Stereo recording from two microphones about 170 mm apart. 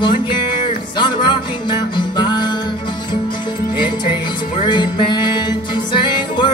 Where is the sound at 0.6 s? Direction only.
30° left (ahead or behind).